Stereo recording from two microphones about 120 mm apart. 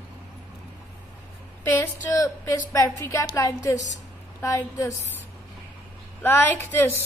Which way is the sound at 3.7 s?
90° left.